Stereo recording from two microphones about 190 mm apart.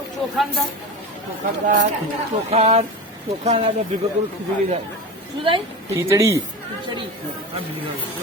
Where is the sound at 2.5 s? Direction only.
35° right (ahead or behind).